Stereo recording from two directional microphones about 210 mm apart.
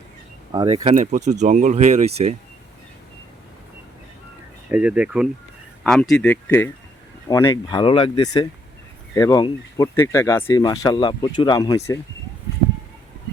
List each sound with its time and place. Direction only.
0.5 s speech: 20° right (ahead or behind)
4.7 s speech: 5° right (ahead or behind); by 11.9 s 15° left (ahead or behind)